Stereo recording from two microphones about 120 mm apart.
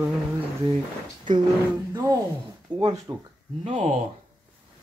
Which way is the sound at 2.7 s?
30° right (ahead or behind).